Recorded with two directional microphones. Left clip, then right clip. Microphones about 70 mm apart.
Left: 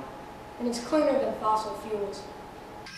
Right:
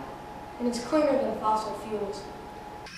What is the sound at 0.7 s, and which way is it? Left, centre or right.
Speech, centre.